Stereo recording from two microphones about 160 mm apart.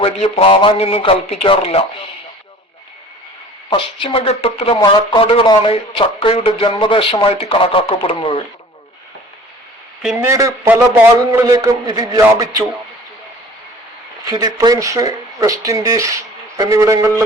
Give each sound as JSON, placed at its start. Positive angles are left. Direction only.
{"t": 0.0, "sound": "speech", "side_deg": 40}
{"t": 3.7, "sound": "speech", "side_deg": 35}
{"t": 10.0, "sound": "speech", "side_deg": -5}
{"t": 10.2, "sound": "speech", "side_deg": -20}
{"t": 14.3, "sound": "speech", "side_deg": -25}